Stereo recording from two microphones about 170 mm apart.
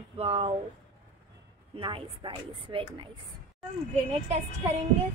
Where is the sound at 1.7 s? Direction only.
30° right (ahead or behind).